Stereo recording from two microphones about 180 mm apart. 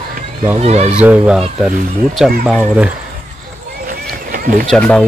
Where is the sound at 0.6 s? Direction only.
35° right (ahead or behind).